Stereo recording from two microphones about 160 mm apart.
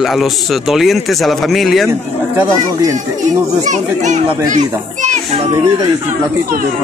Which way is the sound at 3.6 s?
50° right (ahead or behind).